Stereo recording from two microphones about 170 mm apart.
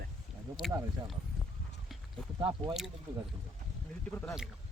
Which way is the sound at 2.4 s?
30° right (ahead or behind).